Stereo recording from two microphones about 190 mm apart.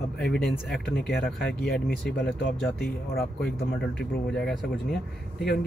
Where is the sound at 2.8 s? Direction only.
55° left (ahead or behind).